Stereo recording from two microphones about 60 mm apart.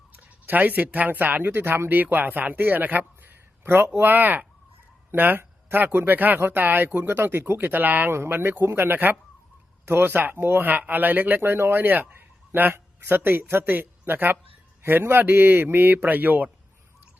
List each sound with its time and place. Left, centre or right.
0.2 s speech: right
8.1 s speech: right